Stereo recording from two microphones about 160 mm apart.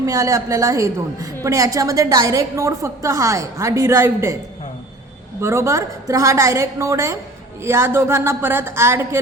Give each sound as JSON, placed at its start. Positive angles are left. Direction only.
{"t": 0.0, "sound": "a woman's voice", "side_deg": -20}
{"t": 5.4, "sound": "a woman's voice", "side_deg": -15}